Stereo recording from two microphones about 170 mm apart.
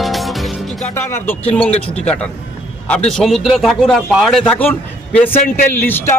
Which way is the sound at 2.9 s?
5° left (ahead or behind).